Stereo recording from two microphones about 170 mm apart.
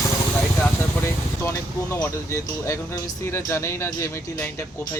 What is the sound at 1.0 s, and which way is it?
Speech, 15° left (ahead or behind).